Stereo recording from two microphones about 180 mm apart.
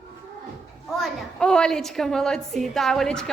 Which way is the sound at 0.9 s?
5° left (ahead or behind).